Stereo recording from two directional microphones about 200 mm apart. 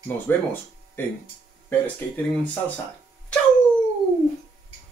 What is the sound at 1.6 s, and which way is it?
Speech, 10° left (ahead or behind).